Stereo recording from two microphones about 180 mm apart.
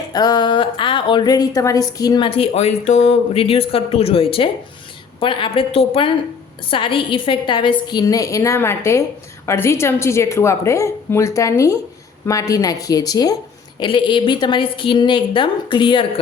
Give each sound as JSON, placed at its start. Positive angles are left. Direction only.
{"t": 0.1, "sound": "a woman's voice", "side_deg": 20}